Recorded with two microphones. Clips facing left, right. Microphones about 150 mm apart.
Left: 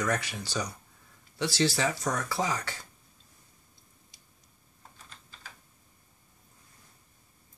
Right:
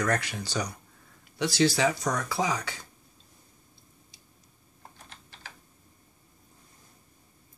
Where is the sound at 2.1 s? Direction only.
Centre (ahead or behind).